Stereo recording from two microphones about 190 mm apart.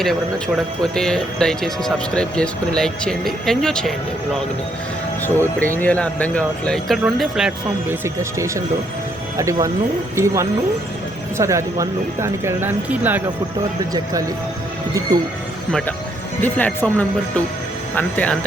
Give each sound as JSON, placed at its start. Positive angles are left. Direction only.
{"t": 0.0, "sound": "speech", "side_deg": 0}
{"t": 5.4, "sound": "speech", "side_deg": 10}
{"t": 8.0, "sound": "speech", "side_deg": -15}
{"t": 16.4, "sound": "speech", "side_deg": 10}